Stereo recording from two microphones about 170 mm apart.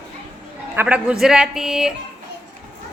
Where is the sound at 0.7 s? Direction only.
5° right (ahead or behind).